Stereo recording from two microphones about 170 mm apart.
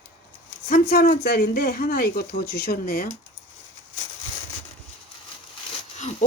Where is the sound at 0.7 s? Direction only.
60° left (ahead or behind).